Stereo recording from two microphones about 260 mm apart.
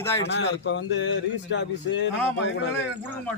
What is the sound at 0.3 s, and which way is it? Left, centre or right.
A man's voice, left.